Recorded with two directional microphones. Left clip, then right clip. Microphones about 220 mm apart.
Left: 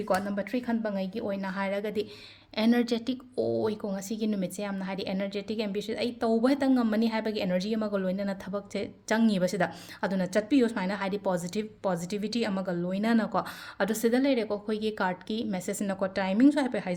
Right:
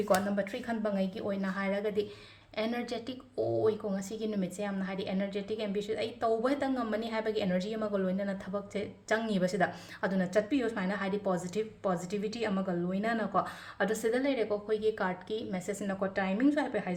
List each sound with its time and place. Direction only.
0.1 s a woman's voice: 35° left (ahead or behind)